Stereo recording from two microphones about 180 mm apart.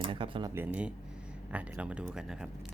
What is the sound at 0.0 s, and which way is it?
Speech, 30° right (ahead or behind).